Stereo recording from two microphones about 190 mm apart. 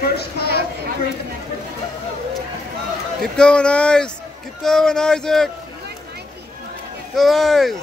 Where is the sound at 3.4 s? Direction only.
5° left (ahead or behind).